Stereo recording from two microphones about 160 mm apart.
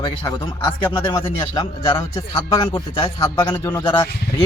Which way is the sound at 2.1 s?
20° left (ahead or behind).